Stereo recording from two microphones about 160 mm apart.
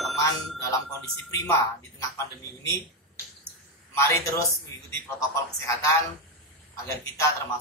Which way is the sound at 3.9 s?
20° left (ahead or behind).